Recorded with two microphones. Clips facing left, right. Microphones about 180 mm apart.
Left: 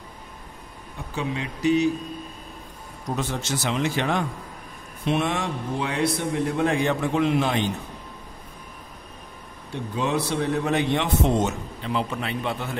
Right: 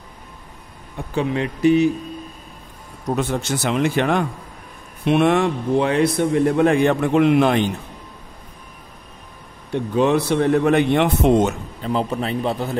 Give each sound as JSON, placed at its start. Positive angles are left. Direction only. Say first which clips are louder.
{"t": 1.1, "sound": "a man's voice", "louder": "right 7 dB", "side_deg": -60}
{"t": 3.2, "sound": "a man's voice", "louder": "right 5 dB", "side_deg": -55}
{"t": 9.7, "sound": "a man's voice", "louder": "right 9 dB", "side_deg": -60}
{"t": 11.8, "sound": "a man's voice", "louder": "right 6 dB", "side_deg": -40}